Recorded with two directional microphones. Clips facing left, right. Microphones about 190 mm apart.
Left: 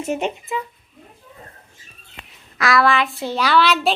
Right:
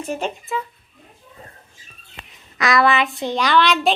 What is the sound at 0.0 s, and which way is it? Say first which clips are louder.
Speech: left 2 dB; 20° left (ahead or behind).